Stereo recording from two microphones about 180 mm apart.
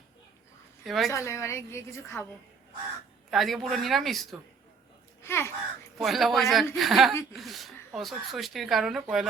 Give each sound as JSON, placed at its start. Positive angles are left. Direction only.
{"t": 0.9, "sound": "speech", "side_deg": 0}
{"t": 1.1, "sound": "a woman's voice", "side_deg": 15}
{"t": 3.2, "sound": "speech", "side_deg": 0}
{"t": 5.2, "sound": "a sound", "side_deg": 15}
{"t": 6.0, "sound": "speech", "side_deg": 0}